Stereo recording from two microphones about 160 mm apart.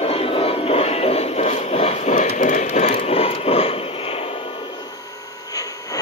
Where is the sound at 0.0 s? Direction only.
35° left (ahead or behind).